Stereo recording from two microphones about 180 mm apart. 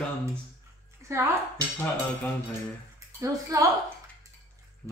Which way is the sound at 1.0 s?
15° right (ahead or behind).